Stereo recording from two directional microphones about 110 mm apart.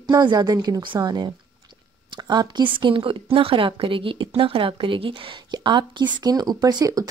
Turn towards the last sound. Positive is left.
turn(degrees=-35)  # may be behind; listen again after turning